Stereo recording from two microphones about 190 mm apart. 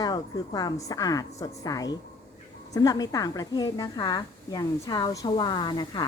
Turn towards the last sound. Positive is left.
turn(degrees=25)  # may be behind; listen again after turning